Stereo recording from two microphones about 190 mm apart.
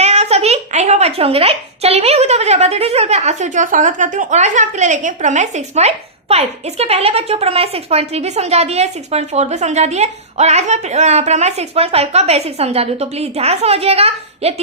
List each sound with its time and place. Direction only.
0.0 s a woman's voice: 35° right (ahead or behind)